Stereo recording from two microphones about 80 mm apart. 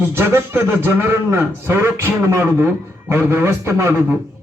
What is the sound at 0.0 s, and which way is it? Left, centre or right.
A man's voice, right.